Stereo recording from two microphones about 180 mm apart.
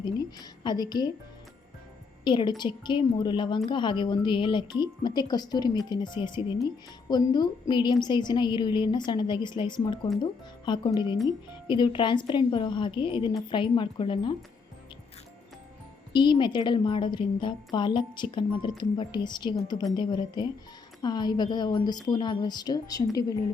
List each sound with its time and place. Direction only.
0.0 s speech: 25° left (ahead or behind)
2.2 s speech: 25° left (ahead or behind)
16.1 s speech: 25° left (ahead or behind)